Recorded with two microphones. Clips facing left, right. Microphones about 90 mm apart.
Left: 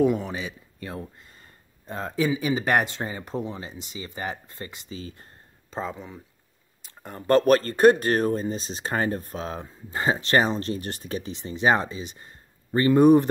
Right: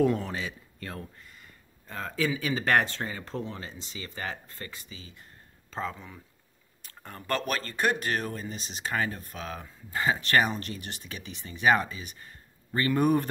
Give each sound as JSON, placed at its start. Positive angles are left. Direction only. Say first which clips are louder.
{"t": 0.0, "sound": "speech", "louder": "left 3 dB", "side_deg": 10}
{"t": 1.2, "sound": "speech", "louder": "even", "side_deg": 35}
{"t": 4.8, "sound": "speech", "louder": "left 10 dB", "side_deg": 40}
{"t": 5.7, "sound": "speech", "louder": "left 3 dB", "side_deg": 20}
{"t": 6.8, "sound": "a sound", "louder": "left 5 dB", "side_deg": 20}
{"t": 7.2, "sound": "speech", "louder": "left 12 dB", "side_deg": 40}